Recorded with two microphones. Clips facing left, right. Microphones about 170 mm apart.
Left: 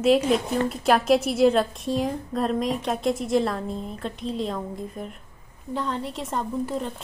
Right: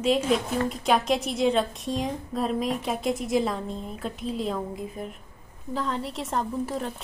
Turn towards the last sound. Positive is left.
turn(degrees=0)  # may be behind; listen again after turning